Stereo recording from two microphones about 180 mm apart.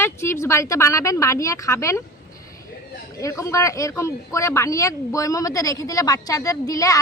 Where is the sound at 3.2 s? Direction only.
15° left (ahead or behind).